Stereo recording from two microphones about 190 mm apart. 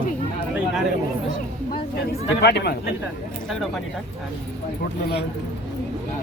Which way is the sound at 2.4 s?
60° left (ahead or behind).